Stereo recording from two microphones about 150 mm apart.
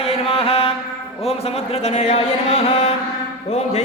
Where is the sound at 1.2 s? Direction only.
40° left (ahead or behind).